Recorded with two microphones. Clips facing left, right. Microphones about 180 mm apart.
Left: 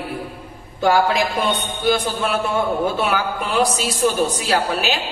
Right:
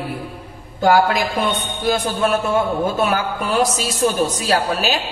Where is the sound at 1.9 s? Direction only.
45° right (ahead or behind).